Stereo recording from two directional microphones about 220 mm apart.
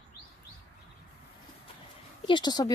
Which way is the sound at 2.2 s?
20° left (ahead or behind).